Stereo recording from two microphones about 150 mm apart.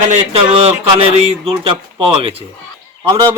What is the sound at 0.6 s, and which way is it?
Speech, 40° right (ahead or behind).